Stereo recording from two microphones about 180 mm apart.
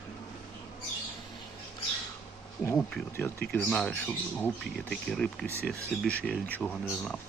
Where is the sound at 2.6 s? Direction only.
10° left (ahead or behind).